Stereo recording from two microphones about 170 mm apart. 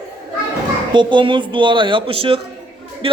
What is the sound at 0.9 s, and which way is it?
A man's voice, 30° right (ahead or behind).